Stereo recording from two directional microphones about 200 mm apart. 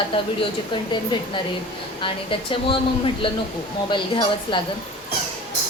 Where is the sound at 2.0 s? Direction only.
25° left (ahead or behind).